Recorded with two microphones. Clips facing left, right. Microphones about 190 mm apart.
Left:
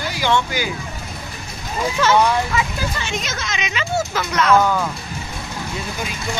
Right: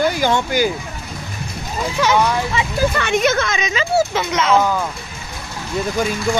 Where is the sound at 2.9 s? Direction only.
60° right (ahead or behind).